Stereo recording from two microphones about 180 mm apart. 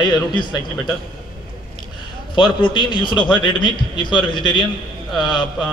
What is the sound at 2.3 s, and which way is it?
A man's voice, 25° left (ahead or behind).